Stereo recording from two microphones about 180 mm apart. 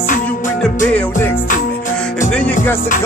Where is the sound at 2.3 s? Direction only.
5° left (ahead or behind).